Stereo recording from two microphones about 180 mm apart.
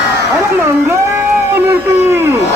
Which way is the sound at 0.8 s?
15° right (ahead or behind).